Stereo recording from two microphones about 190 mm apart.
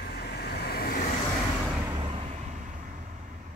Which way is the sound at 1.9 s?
30° right (ahead or behind).